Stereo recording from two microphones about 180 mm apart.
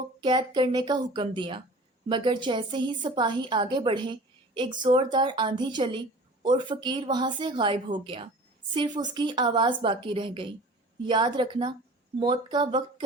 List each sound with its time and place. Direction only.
0.2 s a woman's voice: 25° right (ahead or behind)